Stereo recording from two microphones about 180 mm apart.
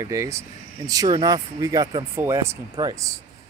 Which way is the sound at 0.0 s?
15° right (ahead or behind).